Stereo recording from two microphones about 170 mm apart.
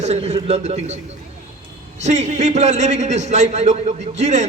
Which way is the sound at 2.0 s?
40° right (ahead or behind).